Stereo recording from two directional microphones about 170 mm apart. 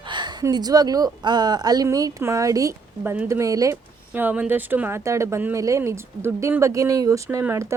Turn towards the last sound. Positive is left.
turn(degrees=-15)  # may be behind; listen again after turning